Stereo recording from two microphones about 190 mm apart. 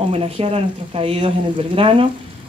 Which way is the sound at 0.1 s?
30° right (ahead or behind).